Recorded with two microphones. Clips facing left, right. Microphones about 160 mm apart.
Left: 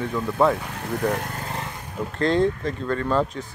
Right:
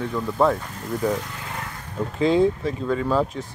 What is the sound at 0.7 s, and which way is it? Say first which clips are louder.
Speech: even; 70° left (ahead or behind).